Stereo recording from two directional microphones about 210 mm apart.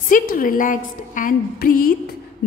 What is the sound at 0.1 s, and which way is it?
A woman's voice, 40° left (ahead or behind).